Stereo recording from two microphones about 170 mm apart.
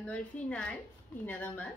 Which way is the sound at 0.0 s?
10° left (ahead or behind).